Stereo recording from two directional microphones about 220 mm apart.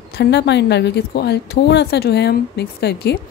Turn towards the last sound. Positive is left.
turn(degrees=50)  # may be behind; listen again after turning